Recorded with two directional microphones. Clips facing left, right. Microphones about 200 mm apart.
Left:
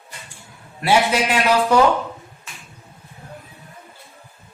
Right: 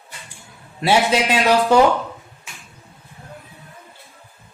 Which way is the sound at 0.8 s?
20° right (ahead or behind).